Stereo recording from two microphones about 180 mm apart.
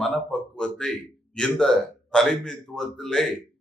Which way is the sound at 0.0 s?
5° left (ahead or behind).